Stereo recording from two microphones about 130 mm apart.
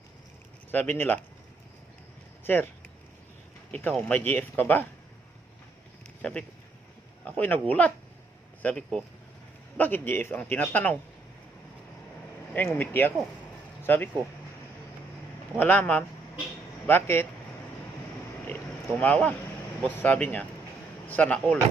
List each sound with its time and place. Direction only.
0.7 s speech: 15° left (ahead or behind)
2.4 s a sound: 15° left (ahead or behind)
3.7 s speech: 10° left (ahead or behind)
7.3 s speech: 15° left (ahead or behind)
12.5 s speech: 15° left (ahead or behind)
15.5 s speech: 15° left (ahead or behind)
18.4 s a sound: 10° left (ahead or behind)
19.8 s speech: 10° left (ahead or behind)